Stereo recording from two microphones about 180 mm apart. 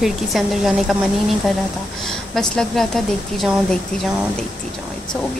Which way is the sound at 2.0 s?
5° left (ahead or behind).